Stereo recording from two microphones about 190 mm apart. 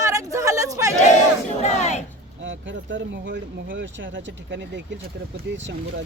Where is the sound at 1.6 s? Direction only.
35° left (ahead or behind).